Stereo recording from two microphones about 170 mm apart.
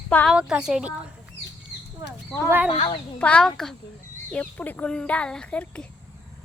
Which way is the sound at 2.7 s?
35° left (ahead or behind).